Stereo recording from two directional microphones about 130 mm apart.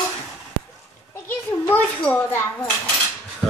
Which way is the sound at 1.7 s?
15° left (ahead or behind).